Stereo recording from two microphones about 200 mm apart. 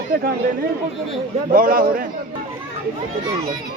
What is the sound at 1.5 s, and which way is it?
Speech, 45° right (ahead or behind).